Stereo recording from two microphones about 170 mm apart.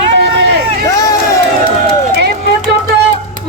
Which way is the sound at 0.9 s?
20° left (ahead or behind).